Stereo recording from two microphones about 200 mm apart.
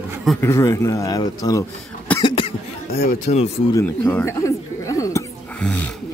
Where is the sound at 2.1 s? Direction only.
10° left (ahead or behind).